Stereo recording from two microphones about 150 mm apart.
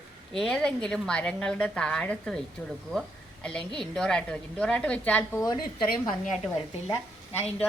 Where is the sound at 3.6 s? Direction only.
30° right (ahead or behind).